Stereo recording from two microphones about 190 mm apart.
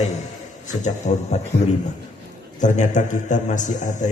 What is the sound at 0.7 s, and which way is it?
Speech, 40° left (ahead or behind).